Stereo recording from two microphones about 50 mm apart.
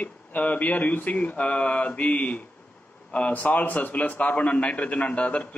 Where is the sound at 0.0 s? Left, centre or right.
Left.